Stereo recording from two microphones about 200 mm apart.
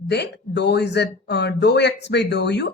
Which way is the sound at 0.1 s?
55° left (ahead or behind).